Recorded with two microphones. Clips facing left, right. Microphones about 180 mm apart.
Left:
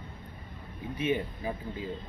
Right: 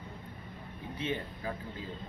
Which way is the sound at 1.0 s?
10° left (ahead or behind).